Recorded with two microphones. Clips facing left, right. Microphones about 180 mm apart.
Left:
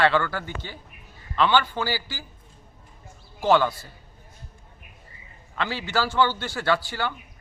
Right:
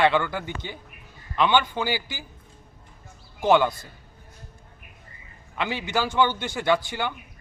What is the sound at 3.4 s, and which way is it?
Speech, 15° right (ahead or behind).